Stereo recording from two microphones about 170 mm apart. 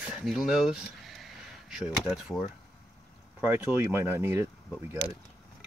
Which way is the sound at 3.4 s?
10° right (ahead or behind).